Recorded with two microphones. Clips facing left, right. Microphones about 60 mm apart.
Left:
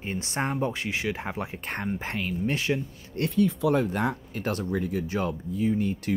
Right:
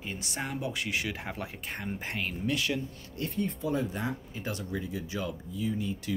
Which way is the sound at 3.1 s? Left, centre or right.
Left.